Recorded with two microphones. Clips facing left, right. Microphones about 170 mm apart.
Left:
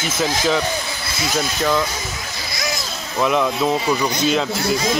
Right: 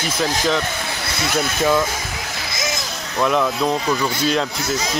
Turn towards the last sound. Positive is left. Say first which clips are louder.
# left 1 dB
turn(degrees=10)  # may be behind; listen again after turning